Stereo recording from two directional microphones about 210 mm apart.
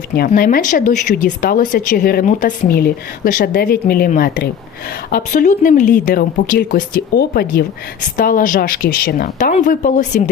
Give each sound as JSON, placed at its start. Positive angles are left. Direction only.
{"t": 0.1, "sound": "speech", "side_deg": 45}